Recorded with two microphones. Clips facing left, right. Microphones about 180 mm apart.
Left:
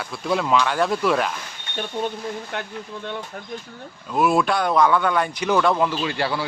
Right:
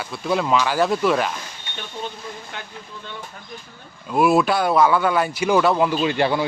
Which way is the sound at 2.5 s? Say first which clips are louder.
Left 6 dB; 55° left (ahead or behind).